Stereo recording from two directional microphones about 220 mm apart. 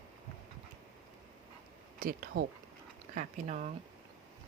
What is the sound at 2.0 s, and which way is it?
Speech, 40° right (ahead or behind).